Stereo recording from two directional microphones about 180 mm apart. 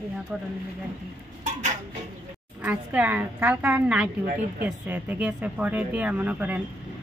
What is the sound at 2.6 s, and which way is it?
A woman's voice, 10° right (ahead or behind).